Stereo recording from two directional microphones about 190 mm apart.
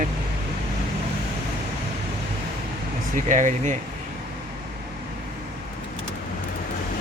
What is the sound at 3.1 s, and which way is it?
Speech, 40° right (ahead or behind).